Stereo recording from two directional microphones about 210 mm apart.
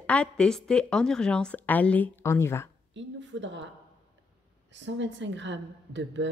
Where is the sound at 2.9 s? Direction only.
60° right (ahead or behind).